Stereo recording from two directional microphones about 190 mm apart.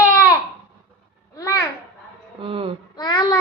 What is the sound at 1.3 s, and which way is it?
Babbling, 15° left (ahead or behind).